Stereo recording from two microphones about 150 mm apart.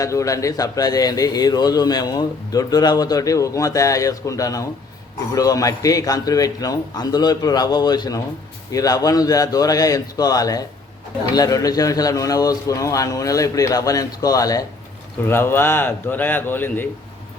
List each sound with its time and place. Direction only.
0.0 s a man's voice: 20° left (ahead or behind)